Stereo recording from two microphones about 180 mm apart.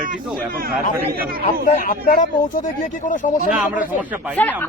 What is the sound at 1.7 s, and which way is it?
Speech, 50° left (ahead or behind).